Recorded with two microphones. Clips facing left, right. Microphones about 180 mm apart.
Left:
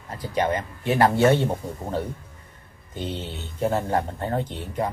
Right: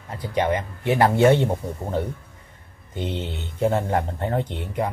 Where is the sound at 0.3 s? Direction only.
20° right (ahead or behind).